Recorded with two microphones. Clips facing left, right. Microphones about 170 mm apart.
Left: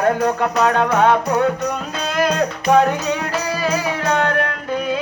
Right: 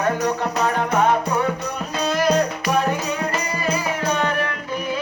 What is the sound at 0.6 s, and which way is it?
Music, 75° left (ahead or behind).